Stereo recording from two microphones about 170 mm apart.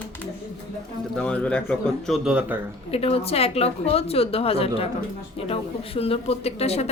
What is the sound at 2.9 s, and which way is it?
A woman's voice, 35° left (ahead or behind).